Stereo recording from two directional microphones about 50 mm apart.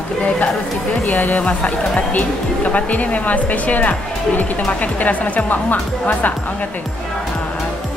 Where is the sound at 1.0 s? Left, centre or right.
Left.